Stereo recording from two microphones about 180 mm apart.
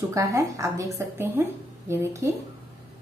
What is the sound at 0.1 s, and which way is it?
A woman's voice, 20° right (ahead or behind).